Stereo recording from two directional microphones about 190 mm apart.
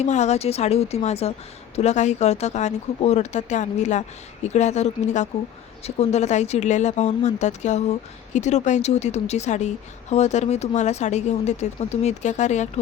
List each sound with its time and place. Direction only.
0.0 s speech: 35° left (ahead or behind)